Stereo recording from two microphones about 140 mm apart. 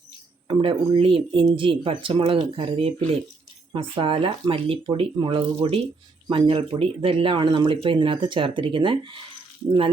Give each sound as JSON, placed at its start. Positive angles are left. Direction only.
{"t": 0.4, "sound": "speech", "side_deg": -40}